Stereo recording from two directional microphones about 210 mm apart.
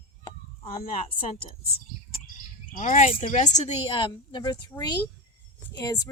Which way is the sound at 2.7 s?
35° left (ahead or behind).